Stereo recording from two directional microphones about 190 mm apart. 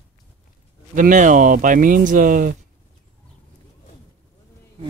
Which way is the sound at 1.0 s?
45° right (ahead or behind).